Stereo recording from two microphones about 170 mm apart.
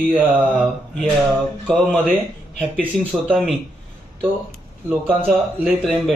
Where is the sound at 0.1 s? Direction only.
5° right (ahead or behind).